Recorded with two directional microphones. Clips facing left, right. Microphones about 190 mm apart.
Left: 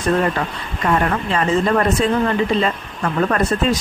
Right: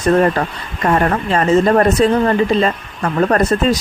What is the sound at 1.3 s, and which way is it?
Speech, 40° right (ahead or behind).